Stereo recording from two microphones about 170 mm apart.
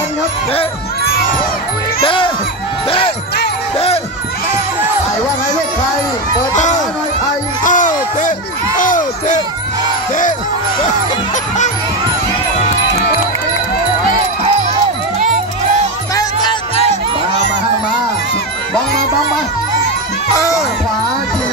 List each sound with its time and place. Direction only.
2.0 s speech: 30° left (ahead or behind)
3.7 s speech: 35° left (ahead or behind)
6.5 s speech: 45° left (ahead or behind)
7.6 s a sound: 50° left (ahead or behind)
16.2 s music: 25° left (ahead or behind)